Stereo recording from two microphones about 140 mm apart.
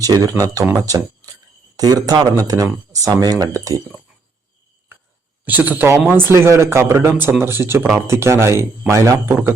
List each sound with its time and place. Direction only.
0.0 s speech: 25° right (ahead or behind)
5.5 s speech: 10° right (ahead or behind)